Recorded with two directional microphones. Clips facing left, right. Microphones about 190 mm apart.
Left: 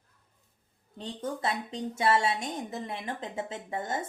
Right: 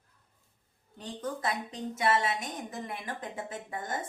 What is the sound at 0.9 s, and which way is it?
Speech, 25° left (ahead or behind).